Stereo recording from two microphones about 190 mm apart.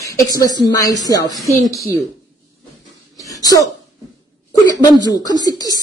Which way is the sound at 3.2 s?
20° left (ahead or behind).